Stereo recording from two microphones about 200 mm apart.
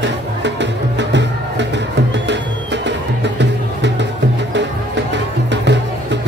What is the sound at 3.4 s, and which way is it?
Music, 60° right (ahead or behind).